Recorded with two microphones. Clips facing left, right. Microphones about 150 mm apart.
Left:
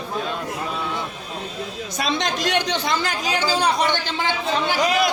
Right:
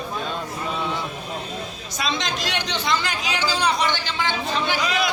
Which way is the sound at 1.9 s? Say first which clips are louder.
Left 3 dB; 55° left (ahead or behind).